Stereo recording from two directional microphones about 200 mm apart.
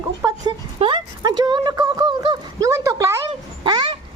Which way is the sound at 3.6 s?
20° right (ahead or behind).